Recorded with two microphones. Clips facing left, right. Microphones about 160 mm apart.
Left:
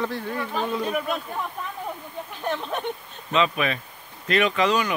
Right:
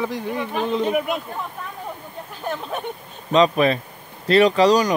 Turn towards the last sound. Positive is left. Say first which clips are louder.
# right 6 dB
turn(degrees=-35)  # may be behind; listen again after turning